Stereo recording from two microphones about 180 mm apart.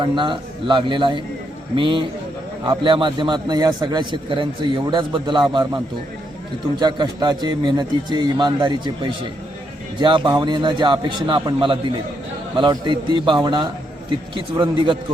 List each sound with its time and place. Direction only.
0.0 s a man's voice: 25° right (ahead or behind)
10.0 s a man's voice: 25° right (ahead or behind)